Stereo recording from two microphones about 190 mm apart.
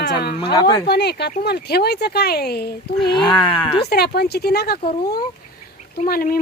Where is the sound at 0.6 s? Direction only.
20° left (ahead or behind).